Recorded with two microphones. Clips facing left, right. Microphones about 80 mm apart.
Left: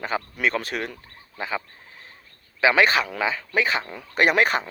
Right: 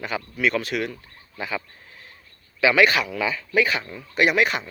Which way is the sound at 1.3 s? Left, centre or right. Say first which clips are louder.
Left 1 dB; left.